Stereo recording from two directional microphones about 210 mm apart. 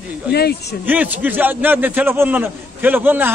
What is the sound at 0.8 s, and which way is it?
A man's voice, 10° right (ahead or behind).